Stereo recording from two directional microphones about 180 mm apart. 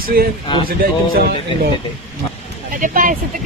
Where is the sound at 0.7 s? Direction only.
55° right (ahead or behind).